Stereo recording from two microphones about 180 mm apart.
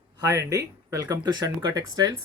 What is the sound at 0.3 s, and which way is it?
Speech, 20° right (ahead or behind).